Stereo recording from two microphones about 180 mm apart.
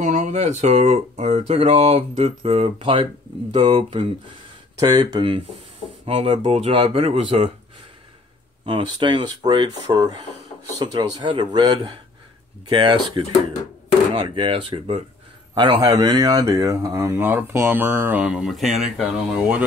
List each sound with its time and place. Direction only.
0.0 s speech: 45° right (ahead or behind)
8.6 s speech: 25° right (ahead or behind); by 19.6 s 5° right (ahead or behind)